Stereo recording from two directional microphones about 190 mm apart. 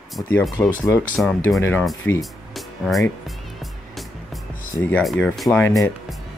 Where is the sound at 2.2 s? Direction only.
Centre (ahead or behind).